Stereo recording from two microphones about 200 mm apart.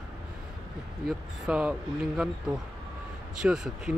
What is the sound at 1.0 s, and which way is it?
Speech, 5° right (ahead or behind).